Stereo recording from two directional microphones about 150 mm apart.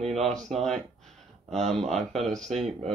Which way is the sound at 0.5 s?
5° left (ahead or behind).